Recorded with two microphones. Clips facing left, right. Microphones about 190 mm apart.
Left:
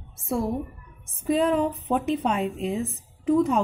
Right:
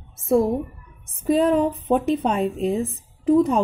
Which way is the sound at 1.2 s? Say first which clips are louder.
Right 4 dB; 40° right (ahead or behind).